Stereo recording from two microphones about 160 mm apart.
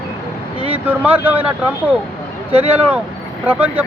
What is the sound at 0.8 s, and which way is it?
Speech, 10° right (ahead or behind).